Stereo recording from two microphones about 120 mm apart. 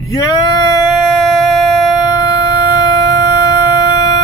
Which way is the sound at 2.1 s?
30° left (ahead or behind).